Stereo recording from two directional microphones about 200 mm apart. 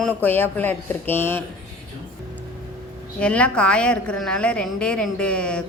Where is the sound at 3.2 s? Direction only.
5° left (ahead or behind).